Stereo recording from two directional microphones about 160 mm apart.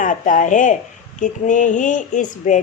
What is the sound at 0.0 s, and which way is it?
A woman's voice, 55° left (ahead or behind).